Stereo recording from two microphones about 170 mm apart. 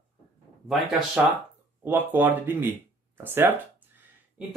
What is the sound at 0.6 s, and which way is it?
Speech, 5° right (ahead or behind).